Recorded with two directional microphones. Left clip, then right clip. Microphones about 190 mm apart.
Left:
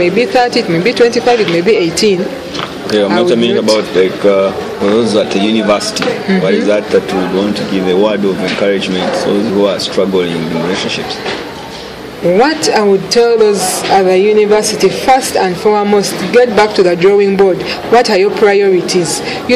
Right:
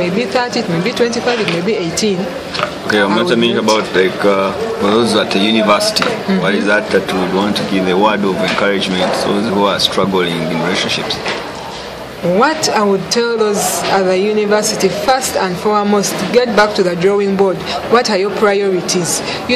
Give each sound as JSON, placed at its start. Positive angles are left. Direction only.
{"t": 0.0, "sound": "speech", "side_deg": 35}
{"t": 3.2, "sound": "a man's voice", "side_deg": -20}
{"t": 9.6, "sound": "a man's voice", "side_deg": -25}
{"t": 12.4, "sound": "speech", "side_deg": 30}